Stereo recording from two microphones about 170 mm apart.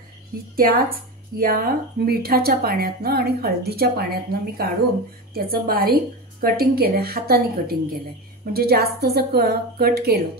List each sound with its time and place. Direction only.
0.6 s a woman's voice: 60° right (ahead or behind)